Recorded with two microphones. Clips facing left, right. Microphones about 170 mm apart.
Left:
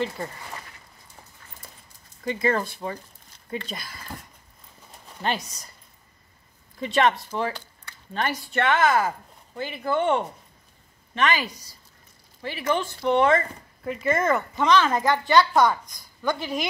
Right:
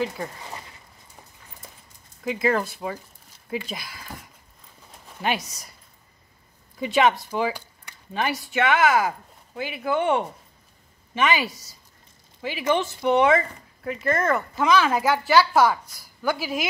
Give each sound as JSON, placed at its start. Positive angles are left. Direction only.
{"t": 0.0, "sound": "speech", "side_deg": -5}
{"t": 0.4, "sound": "a sound", "side_deg": -20}
{"t": 2.2, "sound": "speech", "side_deg": -5}
{"t": 5.2, "sound": "speech", "side_deg": -5}
{"t": 6.8, "sound": "speech", "side_deg": -5}
{"t": 12.4, "sound": "speech", "side_deg": -15}
{"t": 12.6, "sound": "speech", "side_deg": -25}
{"t": 13.1, "sound": "speech", "side_deg": -10}